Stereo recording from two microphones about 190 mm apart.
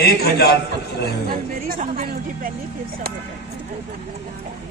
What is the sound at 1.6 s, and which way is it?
Speech, 50° right (ahead or behind).